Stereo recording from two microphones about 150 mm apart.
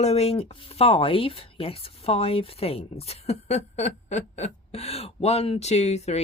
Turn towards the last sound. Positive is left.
turn(degrees=45)  # may be behind; listen again after turning